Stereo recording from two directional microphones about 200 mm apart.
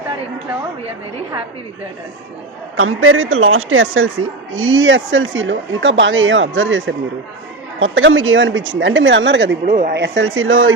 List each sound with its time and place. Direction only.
2.7 s speech: 90° right; by 9.6 s 65° right (ahead or behind)
9.7 s speech: 55° right (ahead or behind); by 10.7 s 80° right